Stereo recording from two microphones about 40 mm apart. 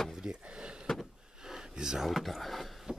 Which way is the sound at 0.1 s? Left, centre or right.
Centre.